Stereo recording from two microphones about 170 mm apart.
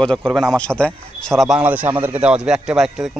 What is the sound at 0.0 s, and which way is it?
A man's voice, 5° left (ahead or behind).